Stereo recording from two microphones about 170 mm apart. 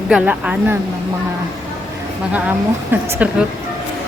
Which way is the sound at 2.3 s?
10° right (ahead or behind).